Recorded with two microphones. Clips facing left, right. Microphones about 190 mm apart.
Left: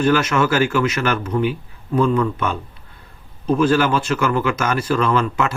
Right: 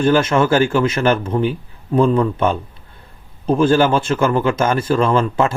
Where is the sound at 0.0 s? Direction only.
25° right (ahead or behind).